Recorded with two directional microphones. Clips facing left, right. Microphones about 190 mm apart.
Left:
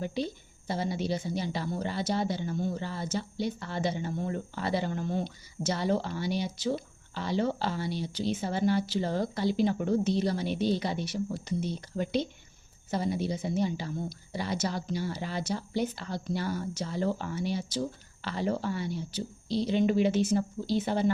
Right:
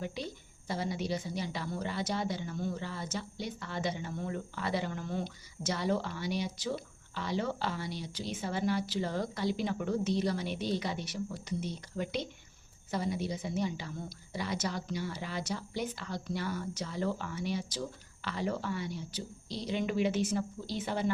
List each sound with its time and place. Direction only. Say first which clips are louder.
0.0 s a woman's voice: left 6 dB; 30° left (ahead or behind)